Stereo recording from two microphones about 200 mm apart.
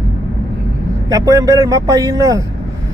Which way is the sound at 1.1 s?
15° right (ahead or behind).